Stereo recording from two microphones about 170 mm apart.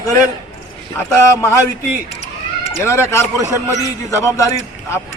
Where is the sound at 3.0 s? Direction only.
15° left (ahead or behind).